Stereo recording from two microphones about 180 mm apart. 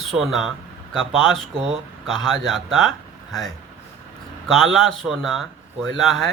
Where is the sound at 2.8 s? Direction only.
Centre (ahead or behind).